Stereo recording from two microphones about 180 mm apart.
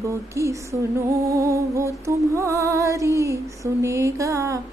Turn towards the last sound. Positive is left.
turn(degrees=-15)  # may be behind; listen again after turning